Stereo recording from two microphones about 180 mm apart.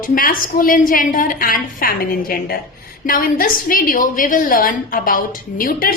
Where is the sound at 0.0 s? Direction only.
50° left (ahead or behind).